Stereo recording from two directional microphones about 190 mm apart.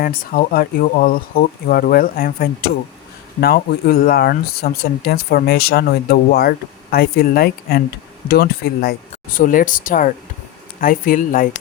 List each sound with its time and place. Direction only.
0.0 s speech: 50° left (ahead or behind)